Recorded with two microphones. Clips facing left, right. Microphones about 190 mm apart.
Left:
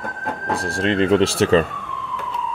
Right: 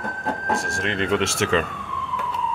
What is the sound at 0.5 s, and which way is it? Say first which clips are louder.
Speech: left 6 dB; 35° left (ahead or behind).